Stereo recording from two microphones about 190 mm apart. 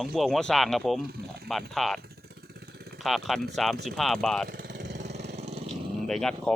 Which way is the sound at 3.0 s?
Centre (ahead or behind).